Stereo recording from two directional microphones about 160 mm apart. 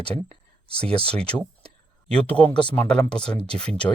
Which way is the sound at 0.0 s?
5° left (ahead or behind).